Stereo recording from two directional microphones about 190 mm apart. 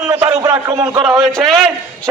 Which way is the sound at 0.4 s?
15° right (ahead or behind).